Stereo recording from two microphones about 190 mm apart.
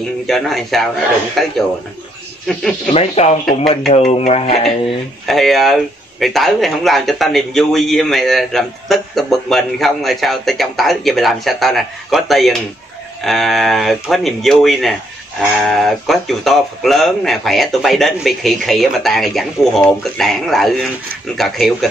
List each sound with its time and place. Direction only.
0.3 s speech: centre (ahead or behind)
2.9 s speech: 35° left (ahead or behind)
5.2 s speech: centre (ahead or behind)